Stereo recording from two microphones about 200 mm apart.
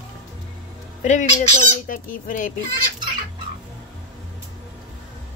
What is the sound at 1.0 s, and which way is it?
Fowl, 35° left (ahead or behind).